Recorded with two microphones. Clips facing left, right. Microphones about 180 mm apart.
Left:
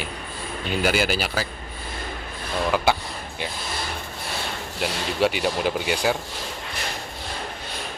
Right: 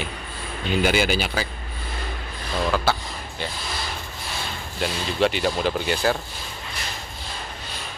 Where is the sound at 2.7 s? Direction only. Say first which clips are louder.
Left 2 dB; 15° left (ahead or behind).